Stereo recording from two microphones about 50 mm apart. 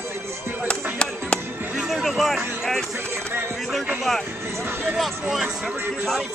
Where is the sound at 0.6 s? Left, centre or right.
Left.